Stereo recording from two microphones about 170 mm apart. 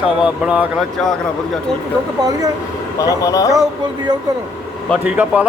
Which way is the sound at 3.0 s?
20° left (ahead or behind).